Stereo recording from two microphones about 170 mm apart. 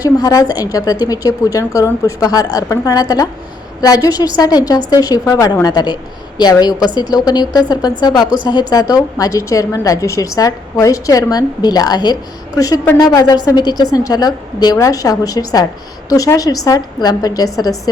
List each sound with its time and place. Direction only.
0.0 s a woman's voice: 20° left (ahead or behind)